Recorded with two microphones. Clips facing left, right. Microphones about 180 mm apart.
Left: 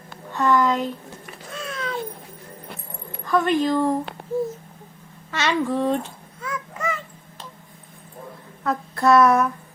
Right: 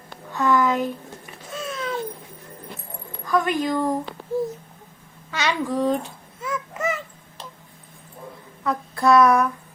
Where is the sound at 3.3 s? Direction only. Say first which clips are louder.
Left 2 dB; centre (ahead or behind).